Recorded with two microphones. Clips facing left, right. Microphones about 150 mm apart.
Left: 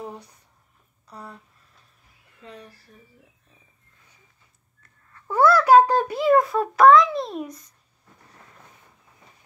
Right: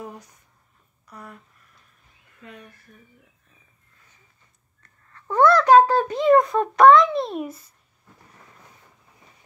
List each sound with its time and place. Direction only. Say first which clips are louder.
0.0 s speech: left 1 dB; 30° left (ahead or behind)
2.4 s speech: left 1 dB; 30° left (ahead or behind)
5.1 s a child's voice: right 1 dB; 5° left (ahead or behind)